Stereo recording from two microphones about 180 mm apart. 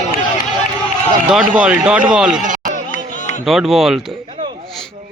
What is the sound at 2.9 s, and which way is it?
Chatter, 45° left (ahead or behind).